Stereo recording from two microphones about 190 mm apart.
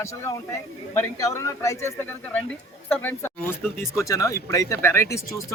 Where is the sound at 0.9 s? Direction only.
15° left (ahead or behind).